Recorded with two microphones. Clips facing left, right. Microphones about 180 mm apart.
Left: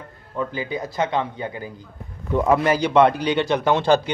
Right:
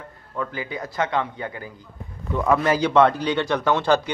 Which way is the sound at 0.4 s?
20° left (ahead or behind).